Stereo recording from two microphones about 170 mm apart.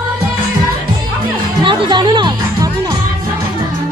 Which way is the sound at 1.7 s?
25° right (ahead or behind).